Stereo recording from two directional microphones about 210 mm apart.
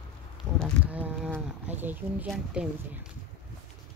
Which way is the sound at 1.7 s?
10° right (ahead or behind).